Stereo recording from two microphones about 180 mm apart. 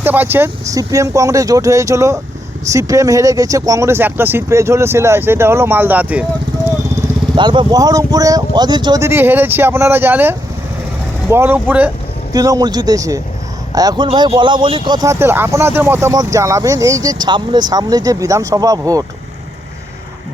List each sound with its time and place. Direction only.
0.0 s speech: 10° right (ahead or behind)
6.9 s speech: 25° right (ahead or behind); by 11.9 s 10° right (ahead or behind)
12.3 s speech: 20° right (ahead or behind)